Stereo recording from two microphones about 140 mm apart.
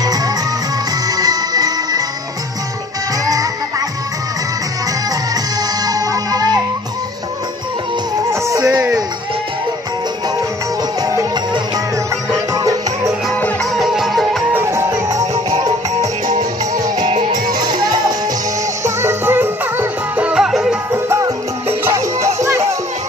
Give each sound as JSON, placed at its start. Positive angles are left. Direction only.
{"t": 0.0, "sound": "music", "side_deg": -25}
{"t": 5.3, "sound": "music", "side_deg": -25}
{"t": 8.3, "sound": "music", "side_deg": -20}
{"t": 11.0, "sound": "music", "side_deg": -25}
{"t": 13.3, "sound": "music", "side_deg": 10}
{"t": 13.7, "sound": "music", "side_deg": 0}
{"t": 14.5, "sound": "music", "side_deg": -20}
{"t": 16.3, "sound": "music", "side_deg": -65}
{"t": 17.3, "sound": "music", "side_deg": -30}
{"t": 18.9, "sound": "music", "side_deg": -20}
{"t": 20.9, "sound": "music", "side_deg": -20}